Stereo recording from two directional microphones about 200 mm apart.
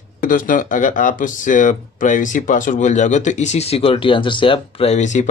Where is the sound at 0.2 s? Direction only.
40° left (ahead or behind).